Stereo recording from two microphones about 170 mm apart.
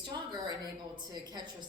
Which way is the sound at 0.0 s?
25° right (ahead or behind).